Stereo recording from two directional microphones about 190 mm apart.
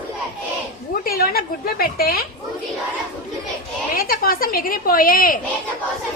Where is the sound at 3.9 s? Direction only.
50° left (ahead or behind).